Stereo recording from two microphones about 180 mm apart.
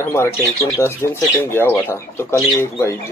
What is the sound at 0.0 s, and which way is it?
Speech, 15° left (ahead or behind).